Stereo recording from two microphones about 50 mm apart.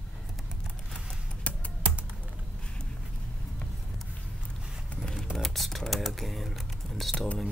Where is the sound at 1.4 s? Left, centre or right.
Left.